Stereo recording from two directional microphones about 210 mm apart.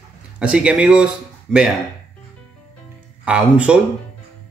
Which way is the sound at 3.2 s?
5° right (ahead or behind).